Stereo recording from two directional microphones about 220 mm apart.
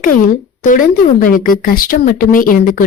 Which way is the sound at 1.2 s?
40° left (ahead or behind).